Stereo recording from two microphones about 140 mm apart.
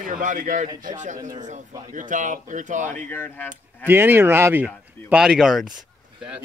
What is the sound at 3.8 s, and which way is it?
Speech, 15° right (ahead or behind).